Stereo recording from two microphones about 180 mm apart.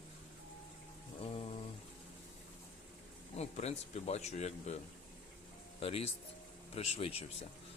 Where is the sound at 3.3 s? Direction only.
35° left (ahead or behind).